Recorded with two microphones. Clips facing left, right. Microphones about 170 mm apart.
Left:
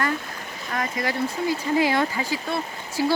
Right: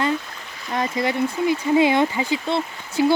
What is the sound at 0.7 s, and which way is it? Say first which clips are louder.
Speech: right 4 dB; 25° right (ahead or behind).